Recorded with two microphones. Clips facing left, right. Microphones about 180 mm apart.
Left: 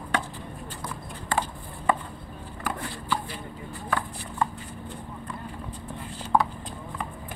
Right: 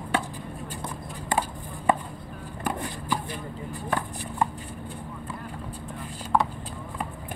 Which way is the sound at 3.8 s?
15° right (ahead or behind).